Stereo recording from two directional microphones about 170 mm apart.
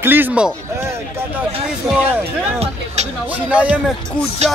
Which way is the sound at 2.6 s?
40° right (ahead or behind).